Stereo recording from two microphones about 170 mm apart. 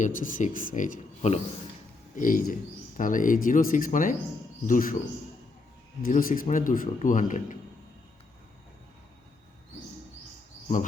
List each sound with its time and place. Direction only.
0.0 s a man's voice: 50° left (ahead or behind)
2.1 s a man's voice: 55° left (ahead or behind)
6.0 s a man's voice: 55° left (ahead or behind)